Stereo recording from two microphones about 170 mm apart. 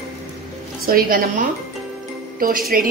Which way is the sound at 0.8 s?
60° right (ahead or behind).